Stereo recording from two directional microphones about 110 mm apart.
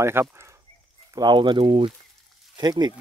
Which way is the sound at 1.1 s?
45° right (ahead or behind).